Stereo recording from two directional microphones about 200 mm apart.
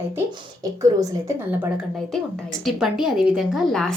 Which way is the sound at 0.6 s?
15° right (ahead or behind).